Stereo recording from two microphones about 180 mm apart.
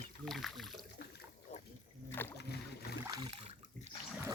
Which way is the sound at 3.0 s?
25° right (ahead or behind).